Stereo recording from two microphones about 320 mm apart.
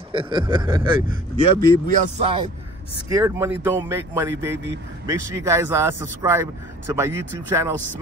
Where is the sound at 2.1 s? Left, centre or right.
Centre.